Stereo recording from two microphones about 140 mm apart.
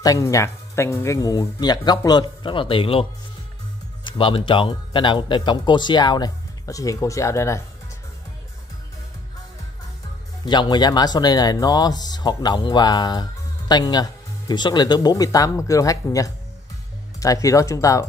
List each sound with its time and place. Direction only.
0.0 s a man's voice: 25° left (ahead or behind)
10.4 s speech: 30° left (ahead or behind)